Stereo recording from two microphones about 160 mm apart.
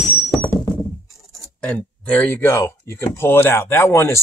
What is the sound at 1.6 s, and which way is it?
Speech, 10° left (ahead or behind).